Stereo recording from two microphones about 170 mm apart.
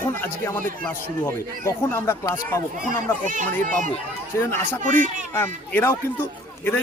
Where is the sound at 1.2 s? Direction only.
15° left (ahead or behind).